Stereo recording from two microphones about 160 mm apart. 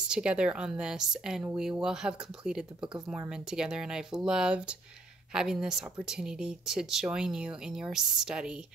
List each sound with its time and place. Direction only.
0.1 s speech: 5° right (ahead or behind)